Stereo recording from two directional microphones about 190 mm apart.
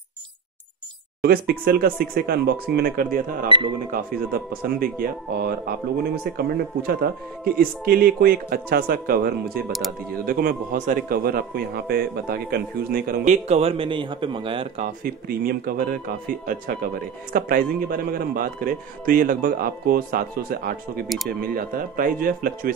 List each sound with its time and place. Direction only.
1.2 s speech: 50° right (ahead or behind)
3.4 s speech: 25° right (ahead or behind)
3.9 s speech: 50° right (ahead or behind)
9.7 s speech: centre (ahead or behind)
10.2 s speech: 50° right (ahead or behind)
13.3 s speech: 35° right (ahead or behind)
15.0 s speech: 50° right (ahead or behind)